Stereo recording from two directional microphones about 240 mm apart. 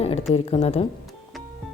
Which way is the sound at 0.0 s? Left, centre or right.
Left.